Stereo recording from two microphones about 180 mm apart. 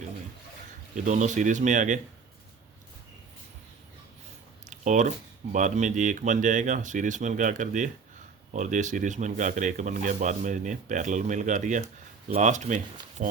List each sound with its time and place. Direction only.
1.0 s speech: 40° right (ahead or behind)
4.6 s speech: 40° right (ahead or behind)